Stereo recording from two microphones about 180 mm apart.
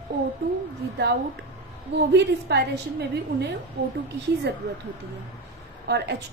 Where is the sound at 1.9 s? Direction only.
70° right (ahead or behind).